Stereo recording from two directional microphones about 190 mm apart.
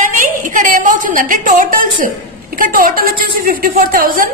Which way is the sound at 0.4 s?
45° right (ahead or behind).